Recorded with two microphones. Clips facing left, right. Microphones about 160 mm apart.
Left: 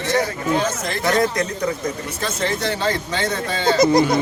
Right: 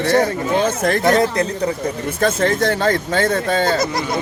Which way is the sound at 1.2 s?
30° right (ahead or behind).